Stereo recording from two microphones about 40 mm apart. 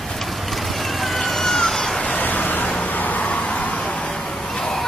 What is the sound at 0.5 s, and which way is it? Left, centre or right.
Vehicle, centre.